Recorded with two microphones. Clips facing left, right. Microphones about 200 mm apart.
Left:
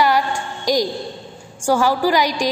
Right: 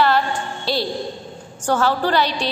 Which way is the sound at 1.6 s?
10° left (ahead or behind).